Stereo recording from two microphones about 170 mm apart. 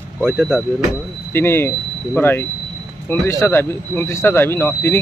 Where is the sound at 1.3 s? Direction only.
15° left (ahead or behind).